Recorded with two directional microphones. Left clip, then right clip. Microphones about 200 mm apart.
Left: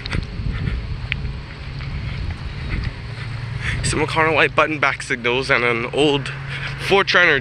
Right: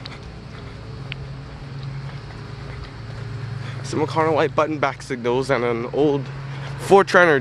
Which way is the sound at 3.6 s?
10° right (ahead or behind).